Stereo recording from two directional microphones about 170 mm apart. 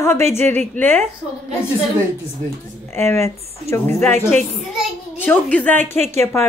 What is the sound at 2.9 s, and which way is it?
A woman's voice, 15° left (ahead or behind).